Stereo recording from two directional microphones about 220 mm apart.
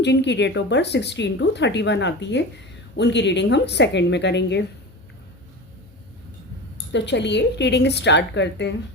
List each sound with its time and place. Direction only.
0.0 s a woman's voice: 50° left (ahead or behind)
6.9 s a woman's voice: 50° left (ahead or behind)